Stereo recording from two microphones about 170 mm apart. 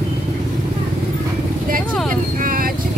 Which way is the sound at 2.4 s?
55° right (ahead or behind).